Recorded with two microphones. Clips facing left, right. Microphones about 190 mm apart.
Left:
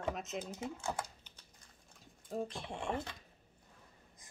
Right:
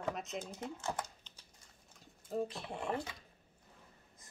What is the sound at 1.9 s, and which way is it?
Speech, centre (ahead or behind).